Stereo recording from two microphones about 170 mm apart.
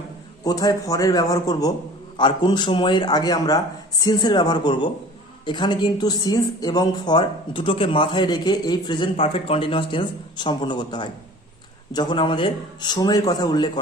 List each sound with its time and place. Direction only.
0.4 s a woman's voice: 20° left (ahead or behind)